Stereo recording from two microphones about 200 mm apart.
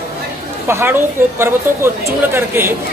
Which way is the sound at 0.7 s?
15° right (ahead or behind).